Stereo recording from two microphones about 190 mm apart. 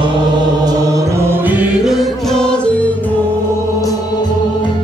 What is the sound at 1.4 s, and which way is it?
Music, 5° right (ahead or behind).